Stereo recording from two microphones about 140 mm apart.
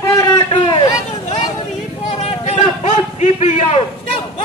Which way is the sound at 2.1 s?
45° left (ahead or behind).